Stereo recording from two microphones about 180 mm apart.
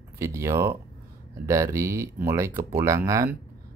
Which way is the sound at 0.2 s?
15° right (ahead or behind).